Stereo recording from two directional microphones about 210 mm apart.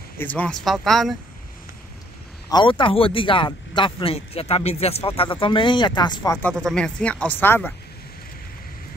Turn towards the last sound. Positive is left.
turn(degrees=10)  # may be behind; listen again after turning